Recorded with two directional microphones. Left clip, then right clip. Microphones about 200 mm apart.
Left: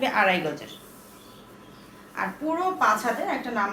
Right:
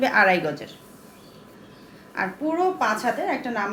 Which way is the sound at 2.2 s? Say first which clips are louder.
Right 3 dB; 35° right (ahead or behind).